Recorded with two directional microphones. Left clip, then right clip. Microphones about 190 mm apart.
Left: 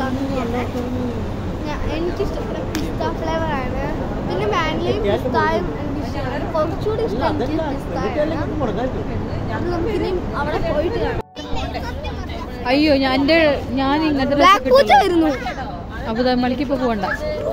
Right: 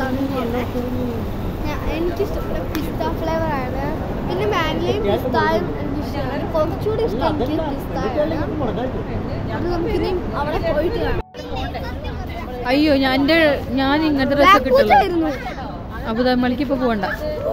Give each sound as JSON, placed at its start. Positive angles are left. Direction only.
{"t": 3.0, "sound": "speech", "side_deg": -5}
{"t": 9.7, "sound": "speech", "side_deg": -5}
{"t": 12.6, "sound": "speech", "side_deg": 0}
{"t": 14.7, "sound": "speech", "side_deg": 55}
{"t": 16.1, "sound": "speech", "side_deg": -5}